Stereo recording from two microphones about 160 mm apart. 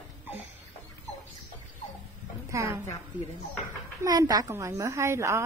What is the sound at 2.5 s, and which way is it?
Speech, 20° right (ahead or behind).